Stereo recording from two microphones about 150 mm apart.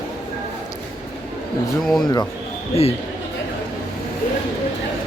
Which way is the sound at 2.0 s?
25° left (ahead or behind).